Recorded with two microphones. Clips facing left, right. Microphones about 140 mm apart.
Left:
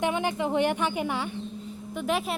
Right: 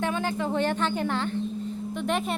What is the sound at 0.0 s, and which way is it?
Speech, 15° left (ahead or behind).